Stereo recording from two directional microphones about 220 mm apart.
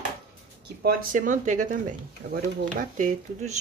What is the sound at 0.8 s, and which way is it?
Speech, 40° right (ahead or behind).